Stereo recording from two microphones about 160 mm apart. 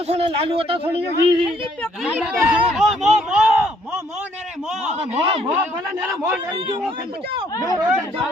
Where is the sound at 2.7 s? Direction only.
Centre (ahead or behind).